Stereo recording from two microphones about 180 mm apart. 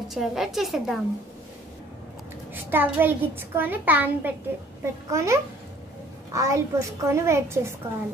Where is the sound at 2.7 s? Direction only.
10° right (ahead or behind).